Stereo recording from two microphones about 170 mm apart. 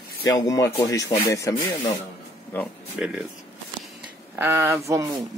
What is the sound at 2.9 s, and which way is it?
Speech, 5° right (ahead or behind).